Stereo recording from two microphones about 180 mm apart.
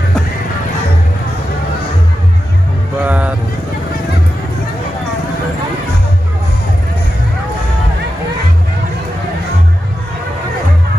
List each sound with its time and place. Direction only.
3.0 s vehicle: 10° right (ahead or behind)